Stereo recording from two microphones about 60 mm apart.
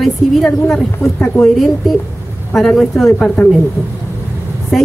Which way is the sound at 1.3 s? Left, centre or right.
Left.